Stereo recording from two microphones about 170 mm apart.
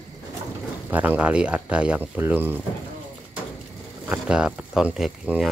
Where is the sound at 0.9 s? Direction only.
10° right (ahead or behind).